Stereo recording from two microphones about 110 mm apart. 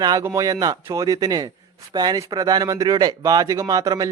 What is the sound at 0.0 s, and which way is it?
A man's voice, 35° right (ahead or behind).